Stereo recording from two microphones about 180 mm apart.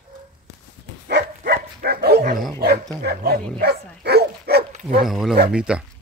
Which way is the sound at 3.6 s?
65° right (ahead or behind).